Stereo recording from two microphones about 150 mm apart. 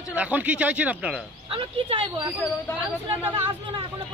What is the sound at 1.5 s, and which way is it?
Speech, 40° right (ahead or behind).